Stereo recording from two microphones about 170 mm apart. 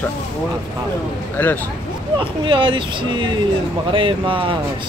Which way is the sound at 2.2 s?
30° right (ahead or behind).